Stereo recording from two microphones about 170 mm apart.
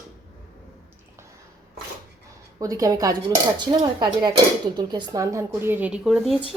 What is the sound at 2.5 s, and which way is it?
A woman's voice, 20° right (ahead or behind).